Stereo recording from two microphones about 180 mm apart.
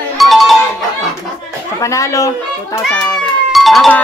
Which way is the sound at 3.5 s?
Centre (ahead or behind).